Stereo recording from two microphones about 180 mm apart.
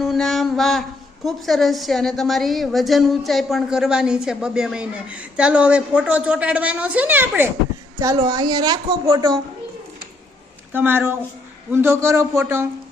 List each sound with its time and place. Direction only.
0.0 s a woman's voice: centre (ahead or behind)
7.9 s a woman's voice: 20° right (ahead or behind)
10.7 s speech: 10° right (ahead or behind)